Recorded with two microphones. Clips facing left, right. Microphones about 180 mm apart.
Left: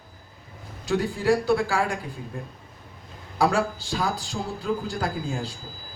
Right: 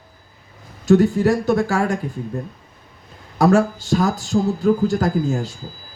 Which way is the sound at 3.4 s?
45° right (ahead or behind).